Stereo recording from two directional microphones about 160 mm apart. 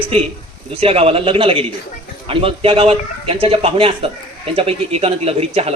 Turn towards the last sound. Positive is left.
turn(degrees=-40)  # may be behind; listen again after turning